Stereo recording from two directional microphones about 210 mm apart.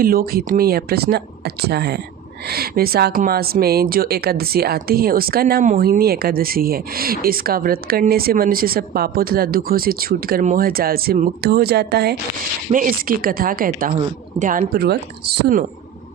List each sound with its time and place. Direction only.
0.0 s speech: 45° right (ahead or behind)